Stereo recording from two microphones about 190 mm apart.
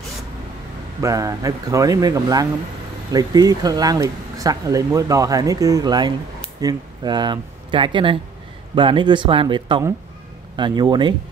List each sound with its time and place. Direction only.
1.0 s speech: 15° right (ahead or behind)